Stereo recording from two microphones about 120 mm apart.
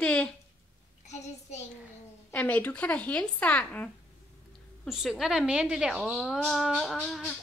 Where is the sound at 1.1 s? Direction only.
70° left (ahead or behind).